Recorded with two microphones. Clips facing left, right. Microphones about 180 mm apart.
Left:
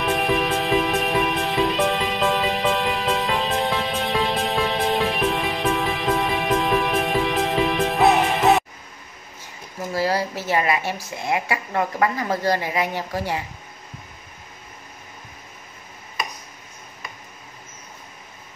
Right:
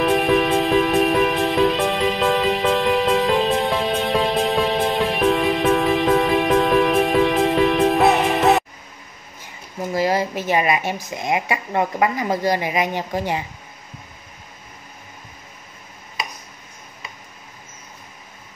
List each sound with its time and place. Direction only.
0.0 s music: centre (ahead or behind)
9.9 s a woman's voice: 20° right (ahead or behind)